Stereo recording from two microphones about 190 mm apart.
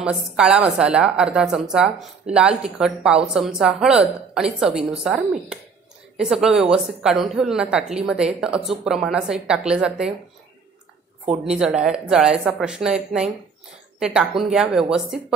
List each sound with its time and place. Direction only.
0.0 s a woman's voice: 5° right (ahead or behind)
11.2 s a woman's voice: 5° right (ahead or behind)